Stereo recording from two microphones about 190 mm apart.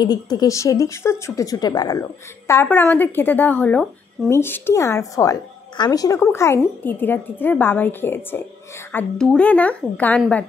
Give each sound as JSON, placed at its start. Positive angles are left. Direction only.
{"t": 0.0, "sound": "speech", "side_deg": 20}